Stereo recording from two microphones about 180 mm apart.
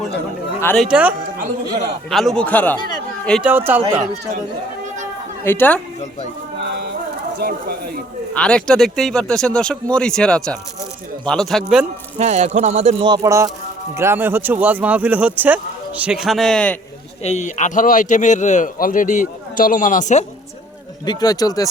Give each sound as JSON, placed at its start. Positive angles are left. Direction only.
{"t": 0.8, "sound": "speech", "side_deg": -5}
{"t": 3.5, "sound": "speech", "side_deg": -10}
{"t": 5.4, "sound": "a woman's voice", "side_deg": 10}
{"t": 7.3, "sound": "speech", "side_deg": -60}
{"t": 8.3, "sound": "speech", "side_deg": 5}
{"t": 12.1, "sound": "speech", "side_deg": -40}
{"t": 13.1, "sound": "speech", "side_deg": -20}
{"t": 17.2, "sound": "a man's voice", "side_deg": 40}
{"t": 21.0, "sound": "speech", "side_deg": 25}